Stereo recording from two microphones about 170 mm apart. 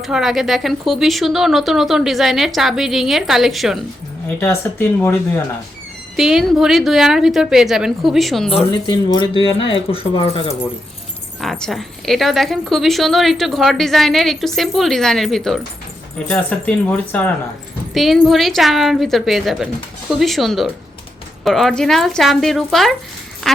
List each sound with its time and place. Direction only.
0.0 s speech: centre (ahead or behind)
4.4 s speech: 10° left (ahead or behind)
6.1 s speech: centre (ahead or behind)
8.5 s speech: 25° left (ahead or behind)
11.3 s speech: centre (ahead or behind)